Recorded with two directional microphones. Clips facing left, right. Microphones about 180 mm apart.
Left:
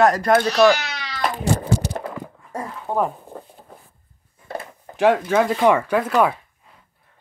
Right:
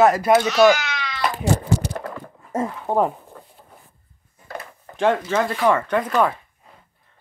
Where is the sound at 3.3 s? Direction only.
30° left (ahead or behind).